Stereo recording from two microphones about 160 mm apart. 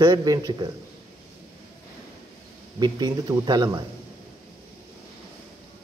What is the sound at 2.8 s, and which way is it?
Speech, 25° right (ahead or behind).